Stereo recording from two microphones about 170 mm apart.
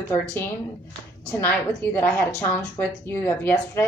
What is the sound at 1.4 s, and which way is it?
A woman's voice, 10° left (ahead or behind).